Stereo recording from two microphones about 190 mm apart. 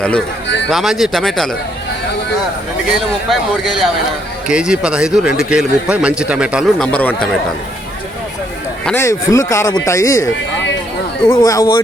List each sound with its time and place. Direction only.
0.7 s speech: centre (ahead or behind)
3.2 s speech: centre (ahead or behind)
8.8 s a man's voice: 10° left (ahead or behind)